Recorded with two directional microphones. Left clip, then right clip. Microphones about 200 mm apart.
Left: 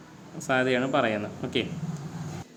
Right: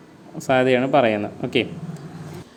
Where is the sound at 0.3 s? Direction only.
30° right (ahead or behind).